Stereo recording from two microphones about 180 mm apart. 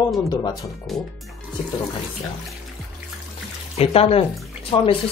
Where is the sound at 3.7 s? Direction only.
35° left (ahead or behind).